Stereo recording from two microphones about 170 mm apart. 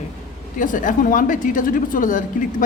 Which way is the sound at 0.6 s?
50° left (ahead or behind).